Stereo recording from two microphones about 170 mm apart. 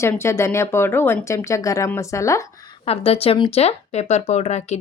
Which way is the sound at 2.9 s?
35° left (ahead or behind).